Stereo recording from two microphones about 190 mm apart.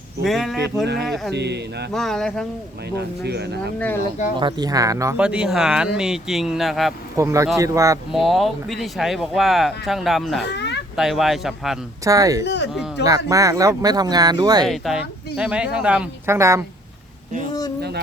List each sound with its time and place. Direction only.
0.3 s speech: centre (ahead or behind)
1.3 s speech: 60° right (ahead or behind)
1.9 s speech: centre (ahead or behind)
2.9 s speech: 60° right (ahead or behind)
4.4 s speech: 25° right (ahead or behind)
5.2 s speech: 5° right (ahead or behind)
7.2 s speech: 15° right (ahead or behind)
8.1 s speech: centre (ahead or behind)
10.4 s speech: 65° left (ahead or behind)
10.9 s speech: centre (ahead or behind)
12.0 s speech: 15° right (ahead or behind)
14.7 s speech: centre (ahead or behind)